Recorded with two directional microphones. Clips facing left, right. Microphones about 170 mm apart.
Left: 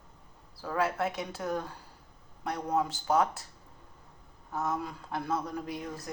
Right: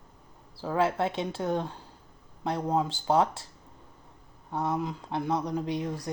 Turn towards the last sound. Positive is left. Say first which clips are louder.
# right 6 dB
turn(degrees=-25)  # may be behind; listen again after turning